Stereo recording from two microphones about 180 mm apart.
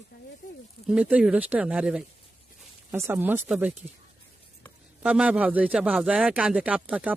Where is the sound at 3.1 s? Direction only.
10° right (ahead or behind).